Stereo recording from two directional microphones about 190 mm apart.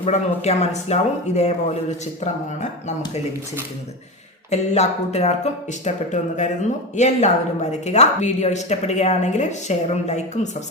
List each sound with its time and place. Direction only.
0.0 s a woman's voice: 35° left (ahead or behind)
4.5 s a woman's voice: 35° left (ahead or behind)